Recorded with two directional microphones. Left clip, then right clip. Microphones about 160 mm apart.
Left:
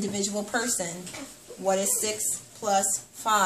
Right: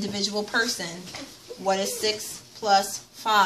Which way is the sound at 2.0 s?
10° left (ahead or behind).